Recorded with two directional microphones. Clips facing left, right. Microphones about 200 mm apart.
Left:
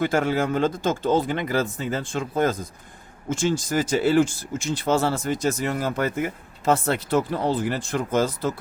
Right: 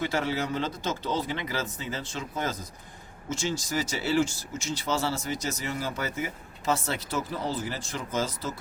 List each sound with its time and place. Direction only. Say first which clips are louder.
0.0 s speech: left 7 dB; 50° left (ahead or behind)